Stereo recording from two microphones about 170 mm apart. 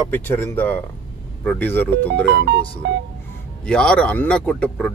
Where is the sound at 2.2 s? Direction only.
75° right (ahead or behind).